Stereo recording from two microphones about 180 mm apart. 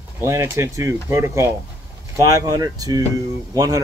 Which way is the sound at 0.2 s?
15° right (ahead or behind).